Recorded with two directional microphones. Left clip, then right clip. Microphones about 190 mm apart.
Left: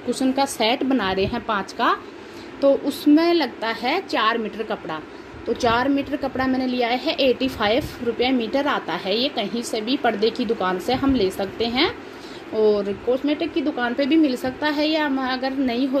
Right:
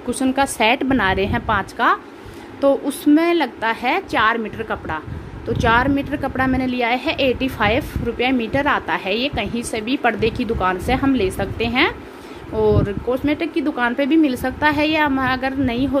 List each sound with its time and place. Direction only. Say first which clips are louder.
0.1 s a woman's voice: right 2 dB; 5° right (ahead or behind)
7.0 s speech: right 1 dB; 25° right (ahead or behind)
7.4 s a woman's voice: right 2 dB; centre (ahead or behind)
9.0 s speech: right 1 dB; 30° right (ahead or behind)
10.0 s a woman's voice: right 2 dB; centre (ahead or behind)
12.5 s speech: right 1 dB; 25° right (ahead or behind)
13.7 s a woman's voice: right 5 dB; 5° right (ahead or behind)
14.0 s speech: right 1 dB; 30° right (ahead or behind)
14.3 s a woman's voice: right 5 dB; 10° right (ahead or behind)